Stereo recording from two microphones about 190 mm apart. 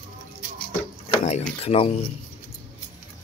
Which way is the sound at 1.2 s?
35° left (ahead or behind).